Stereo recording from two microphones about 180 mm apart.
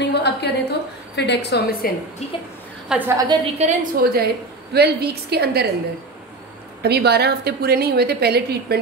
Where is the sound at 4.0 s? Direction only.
55° right (ahead or behind).